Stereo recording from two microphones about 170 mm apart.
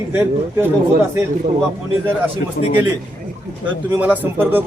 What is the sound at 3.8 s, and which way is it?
Speech, 10° right (ahead or behind).